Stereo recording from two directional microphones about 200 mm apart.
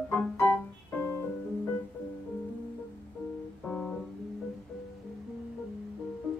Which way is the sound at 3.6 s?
Centre (ahead or behind).